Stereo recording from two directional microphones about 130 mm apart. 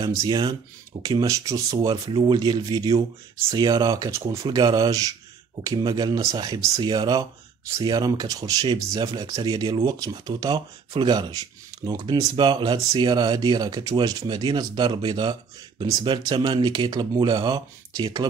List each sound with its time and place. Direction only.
0.0 s speech: 30° right (ahead or behind)
2.0 s speech: 40° right (ahead or behind)